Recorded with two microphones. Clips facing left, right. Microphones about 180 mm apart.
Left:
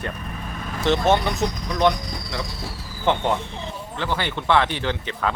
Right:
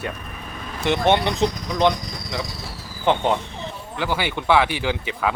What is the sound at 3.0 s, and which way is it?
Speech, 15° right (ahead or behind).